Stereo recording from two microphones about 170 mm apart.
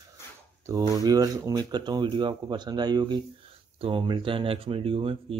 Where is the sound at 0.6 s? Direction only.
20° right (ahead or behind).